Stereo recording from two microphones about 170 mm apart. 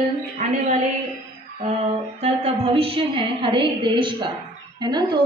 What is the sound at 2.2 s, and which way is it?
A woman's voice, 40° right (ahead or behind).